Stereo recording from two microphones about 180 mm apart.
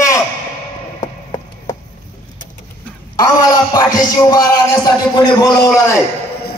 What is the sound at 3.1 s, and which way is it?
A man's voice, 20° left (ahead or behind).